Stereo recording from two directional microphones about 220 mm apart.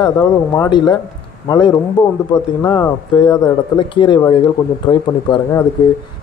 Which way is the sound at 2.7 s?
20° left (ahead or behind).